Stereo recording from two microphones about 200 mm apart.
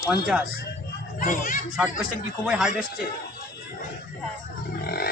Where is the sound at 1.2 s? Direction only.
45° left (ahead or behind).